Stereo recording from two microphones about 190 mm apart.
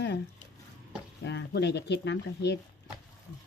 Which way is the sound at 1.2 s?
65° left (ahead or behind).